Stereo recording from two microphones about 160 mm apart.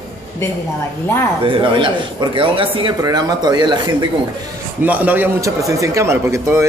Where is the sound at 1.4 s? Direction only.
30° right (ahead or behind).